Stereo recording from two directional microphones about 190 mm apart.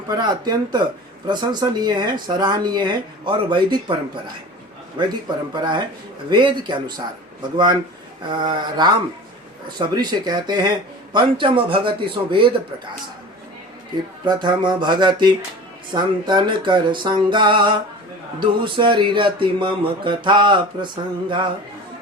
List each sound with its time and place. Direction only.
0.1 s speech: 20° right (ahead or behind)
5.0 s speech: 25° right (ahead or behind)
6.3 s speech: 25° right (ahead or behind)
14.3 s speech: 20° right (ahead or behind)